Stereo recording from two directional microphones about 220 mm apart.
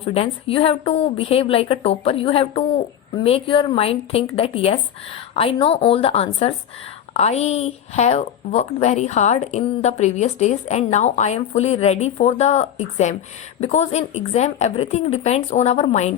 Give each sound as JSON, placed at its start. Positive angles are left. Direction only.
{"t": 0.0, "sound": "a woman's voice", "side_deg": 25}